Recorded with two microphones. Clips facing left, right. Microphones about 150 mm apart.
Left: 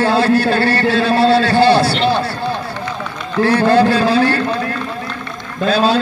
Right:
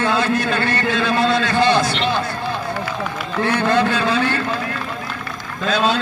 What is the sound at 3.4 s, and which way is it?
Speech, 35° left (ahead or behind).